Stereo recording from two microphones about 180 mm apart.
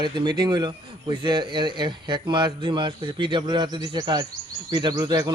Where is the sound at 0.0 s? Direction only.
25° right (ahead or behind).